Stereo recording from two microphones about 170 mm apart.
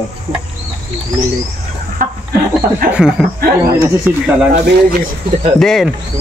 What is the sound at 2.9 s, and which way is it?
Speech, 5° right (ahead or behind).